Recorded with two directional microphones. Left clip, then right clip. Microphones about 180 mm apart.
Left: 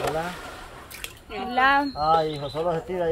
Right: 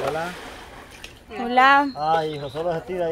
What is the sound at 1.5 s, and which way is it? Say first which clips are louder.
Speech: right 5 dB; 25° right (ahead or behind).